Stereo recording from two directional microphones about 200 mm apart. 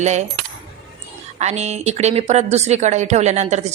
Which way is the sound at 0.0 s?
35° right (ahead or behind).